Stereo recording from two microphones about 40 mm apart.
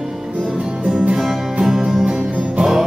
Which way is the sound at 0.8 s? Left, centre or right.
Right.